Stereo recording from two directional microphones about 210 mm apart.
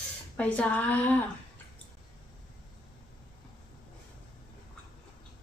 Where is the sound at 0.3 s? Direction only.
5° left (ahead or behind).